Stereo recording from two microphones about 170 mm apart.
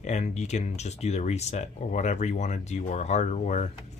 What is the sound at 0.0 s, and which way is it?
Speech, 45° left (ahead or behind).